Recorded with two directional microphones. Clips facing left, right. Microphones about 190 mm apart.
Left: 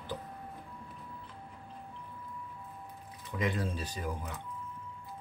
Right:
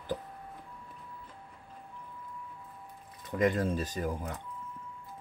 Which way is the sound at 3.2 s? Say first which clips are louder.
Right 6 dB; 45° right (ahead or behind).